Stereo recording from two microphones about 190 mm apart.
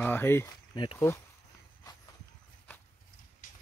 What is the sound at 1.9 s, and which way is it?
Walk, 20° left (ahead or behind).